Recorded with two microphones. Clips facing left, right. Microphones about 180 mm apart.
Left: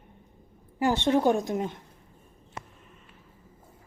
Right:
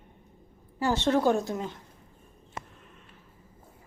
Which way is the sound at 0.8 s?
15° left (ahead or behind).